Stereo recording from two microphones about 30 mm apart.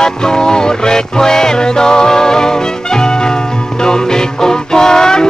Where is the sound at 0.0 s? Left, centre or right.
Left.